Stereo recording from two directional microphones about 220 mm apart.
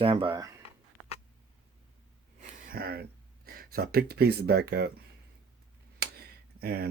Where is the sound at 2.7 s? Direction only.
40° right (ahead or behind).